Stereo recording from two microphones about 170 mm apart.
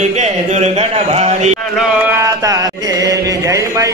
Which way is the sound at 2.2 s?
20° right (ahead or behind).